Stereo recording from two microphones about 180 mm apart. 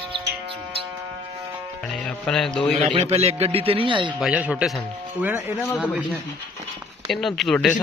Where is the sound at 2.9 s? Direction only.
35° right (ahead or behind).